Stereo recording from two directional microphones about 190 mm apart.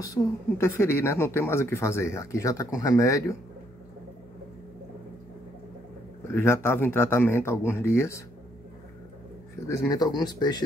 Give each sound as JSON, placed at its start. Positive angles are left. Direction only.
{"t": 0.0, "sound": "speech", "side_deg": 15}
{"t": 6.3, "sound": "speech", "side_deg": 15}
{"t": 9.7, "sound": "speech", "side_deg": 15}